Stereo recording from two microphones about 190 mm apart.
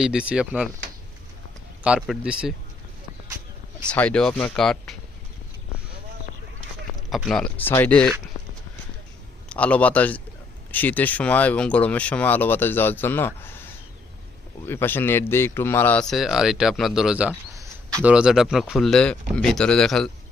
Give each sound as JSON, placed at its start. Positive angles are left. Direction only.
{"t": 0.0, "sound": "speech", "side_deg": -5}
{"t": 1.8, "sound": "speech", "side_deg": -5}
{"t": 3.8, "sound": "speech", "side_deg": 5}
{"t": 7.1, "sound": "speech", "side_deg": 0}
{"t": 9.5, "sound": "speech", "side_deg": 5}
{"t": 14.7, "sound": "speech", "side_deg": 10}
{"t": 17.5, "sound": "a sound", "side_deg": -15}
{"t": 18.1, "sound": "speech", "side_deg": -5}